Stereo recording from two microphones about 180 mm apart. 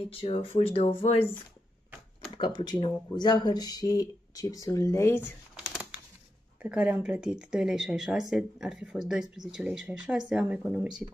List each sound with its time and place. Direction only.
0.1 s speech: 30° left (ahead or behind)
2.3 s speech: 25° left (ahead or behind)
5.7 s a sound: 5° right (ahead or behind)
6.6 s speech: 10° right (ahead or behind)